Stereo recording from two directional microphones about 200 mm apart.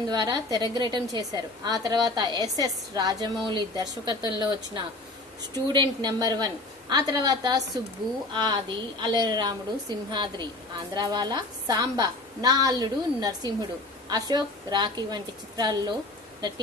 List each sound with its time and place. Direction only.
0.1 s a woman's voice: 20° right (ahead or behind)
5.5 s a woman's voice: 20° right (ahead or behind)